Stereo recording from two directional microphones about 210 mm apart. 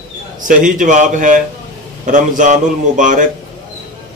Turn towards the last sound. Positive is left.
turn(degrees=-35)  # may be behind; listen again after turning